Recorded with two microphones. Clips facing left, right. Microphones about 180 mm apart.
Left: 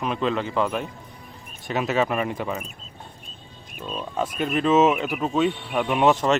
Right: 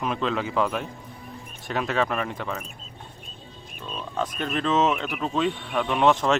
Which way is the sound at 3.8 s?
10° left (ahead or behind).